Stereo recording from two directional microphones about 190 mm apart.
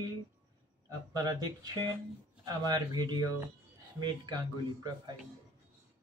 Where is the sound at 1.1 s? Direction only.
20° right (ahead or behind).